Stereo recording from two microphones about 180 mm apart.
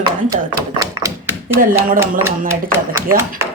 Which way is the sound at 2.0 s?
15° right (ahead or behind).